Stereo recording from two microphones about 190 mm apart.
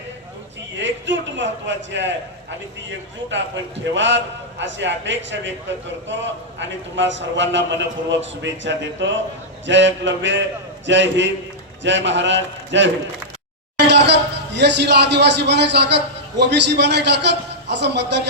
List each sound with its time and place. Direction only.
0.8 s a man's voice: 70° right (ahead or behind)
3.2 s a man's voice: 75° right (ahead or behind)